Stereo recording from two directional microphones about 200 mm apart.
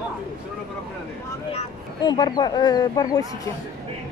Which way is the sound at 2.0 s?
20° left (ahead or behind).